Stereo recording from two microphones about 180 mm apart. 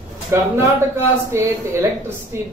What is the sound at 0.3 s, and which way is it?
A man's voice, 15° right (ahead or behind).